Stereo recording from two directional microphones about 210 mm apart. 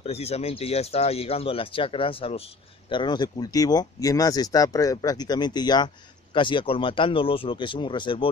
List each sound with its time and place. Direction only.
0.0 s speech: 30° left (ahead or behind)